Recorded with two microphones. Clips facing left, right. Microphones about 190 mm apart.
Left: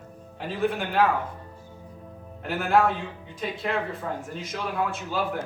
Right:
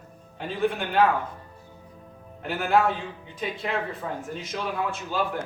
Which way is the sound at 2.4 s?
Centre (ahead or behind).